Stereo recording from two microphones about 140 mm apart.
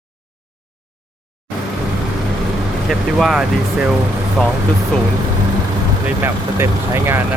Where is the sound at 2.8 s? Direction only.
5° right (ahead or behind).